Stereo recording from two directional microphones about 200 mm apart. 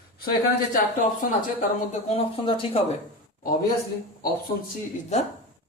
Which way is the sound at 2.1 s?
30° left (ahead or behind).